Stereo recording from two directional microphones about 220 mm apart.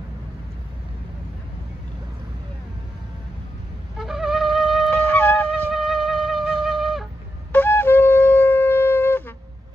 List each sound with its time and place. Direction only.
4.0 s wind instrument: centre (ahead or behind)
7.5 s wind instrument: 10° left (ahead or behind)